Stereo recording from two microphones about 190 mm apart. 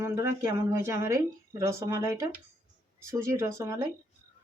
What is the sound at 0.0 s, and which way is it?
Speech, 15° right (ahead or behind).